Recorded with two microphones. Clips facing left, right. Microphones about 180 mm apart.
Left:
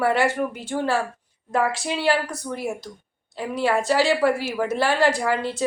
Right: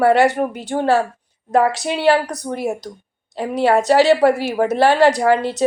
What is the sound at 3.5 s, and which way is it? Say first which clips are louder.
Speech: right 7 dB; 65° right (ahead or behind).